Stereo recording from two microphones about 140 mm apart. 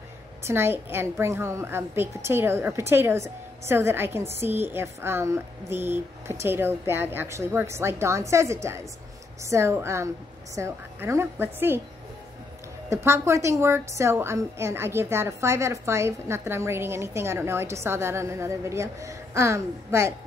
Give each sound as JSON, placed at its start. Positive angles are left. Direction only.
{"t": 0.5, "sound": "a woman's voice", "side_deg": -15}
{"t": 12.9, "sound": "a woman's voice", "side_deg": -20}